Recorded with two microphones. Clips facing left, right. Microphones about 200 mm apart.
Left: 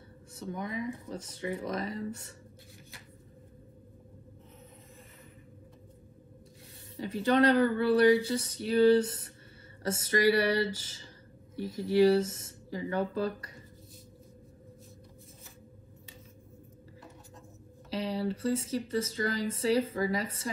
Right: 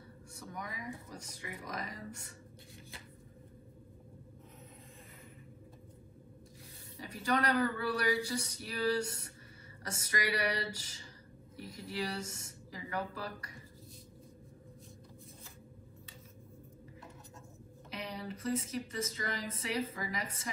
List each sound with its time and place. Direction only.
0.4 s speech: 25° left (ahead or behind)
7.0 s speech: 25° left (ahead or behind)
17.8 s speech: 30° left (ahead or behind)